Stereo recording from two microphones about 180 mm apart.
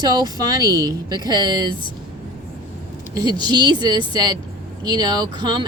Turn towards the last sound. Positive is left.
turn(degrees=-25)  # may be behind; listen again after turning